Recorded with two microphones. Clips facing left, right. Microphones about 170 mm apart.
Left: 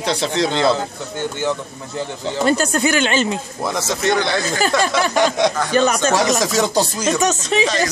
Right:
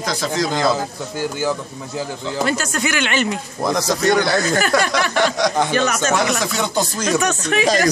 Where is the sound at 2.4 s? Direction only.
35° left (ahead or behind).